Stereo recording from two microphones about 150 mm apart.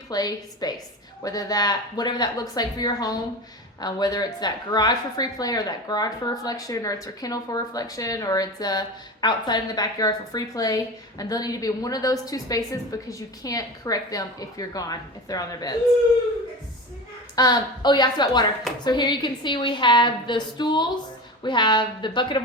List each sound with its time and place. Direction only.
0.1 s a woman's voice: 25° left (ahead or behind)
17.3 s a woman's voice: 25° left (ahead or behind)